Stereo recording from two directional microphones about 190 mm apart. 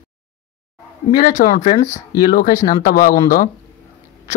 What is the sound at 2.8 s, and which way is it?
Speech, 50° left (ahead or behind).